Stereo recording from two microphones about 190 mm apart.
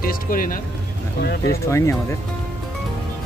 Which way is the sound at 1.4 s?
15° left (ahead or behind).